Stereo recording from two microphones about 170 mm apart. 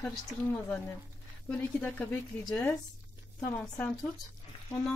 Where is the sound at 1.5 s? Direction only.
10° left (ahead or behind).